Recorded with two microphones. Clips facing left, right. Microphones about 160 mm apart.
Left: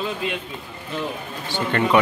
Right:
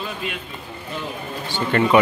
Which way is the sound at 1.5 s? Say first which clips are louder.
Right 2 dB; 5° right (ahead or behind).